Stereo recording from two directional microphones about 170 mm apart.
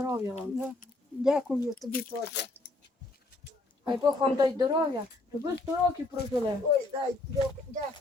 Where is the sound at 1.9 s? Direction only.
60° left (ahead or behind).